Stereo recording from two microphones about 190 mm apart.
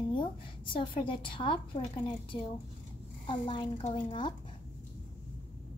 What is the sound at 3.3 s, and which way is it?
A woman's voice, 25° left (ahead or behind).